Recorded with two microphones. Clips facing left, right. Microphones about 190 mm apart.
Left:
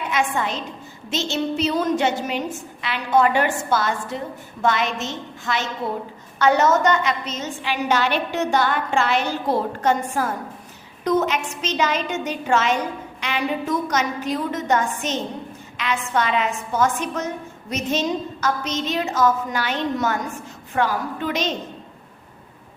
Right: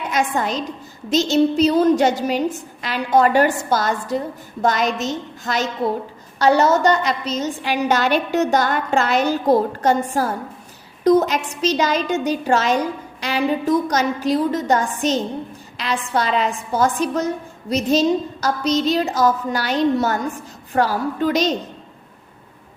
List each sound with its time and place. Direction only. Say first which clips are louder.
0.1 s a woman's voice: right 3 dB; 40° right (ahead or behind)